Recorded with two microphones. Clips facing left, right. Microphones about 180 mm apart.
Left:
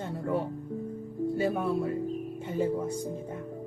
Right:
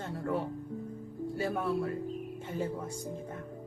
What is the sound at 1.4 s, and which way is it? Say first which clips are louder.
Speech: left 2 dB; 15° left (ahead or behind).